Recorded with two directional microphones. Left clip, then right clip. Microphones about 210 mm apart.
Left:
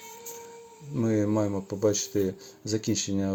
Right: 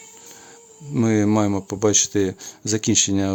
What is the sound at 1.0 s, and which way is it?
Speech, 35° right (ahead or behind).